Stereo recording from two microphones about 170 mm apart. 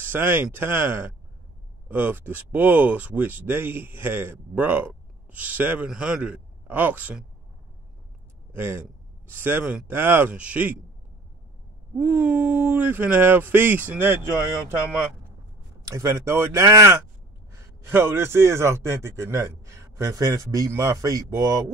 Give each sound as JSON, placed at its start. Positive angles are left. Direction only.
{"t": 0.0, "sound": "speech", "side_deg": -10}
{"t": 8.5, "sound": "speech", "side_deg": -15}
{"t": 12.0, "sound": "speech", "side_deg": -10}
{"t": 15.9, "sound": "speech", "side_deg": -15}